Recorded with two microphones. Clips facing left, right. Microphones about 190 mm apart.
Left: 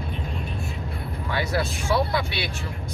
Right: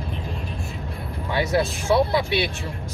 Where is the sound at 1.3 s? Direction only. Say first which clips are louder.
Right 4 dB; 25° right (ahead or behind).